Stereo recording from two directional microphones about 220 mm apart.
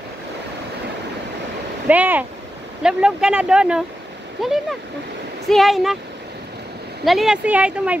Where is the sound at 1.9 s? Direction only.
5° right (ahead or behind).